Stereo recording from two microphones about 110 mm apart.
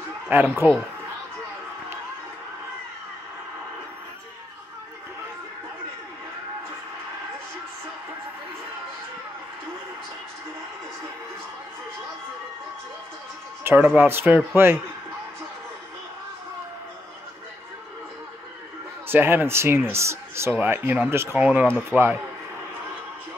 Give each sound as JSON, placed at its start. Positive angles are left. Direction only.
{"t": 0.3, "sound": "speech", "side_deg": -20}
{"t": 13.7, "sound": "speech", "side_deg": -20}
{"t": 19.0, "sound": "speech", "side_deg": -20}